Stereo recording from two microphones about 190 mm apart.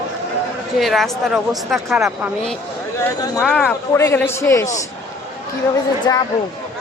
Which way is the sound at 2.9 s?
20° left (ahead or behind).